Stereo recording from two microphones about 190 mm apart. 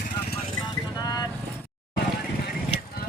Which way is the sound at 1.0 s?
20° left (ahead or behind).